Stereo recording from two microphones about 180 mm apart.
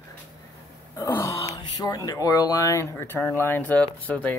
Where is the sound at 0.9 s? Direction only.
15° left (ahead or behind).